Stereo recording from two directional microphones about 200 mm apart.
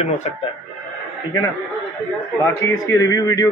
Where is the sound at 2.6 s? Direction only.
15° left (ahead or behind).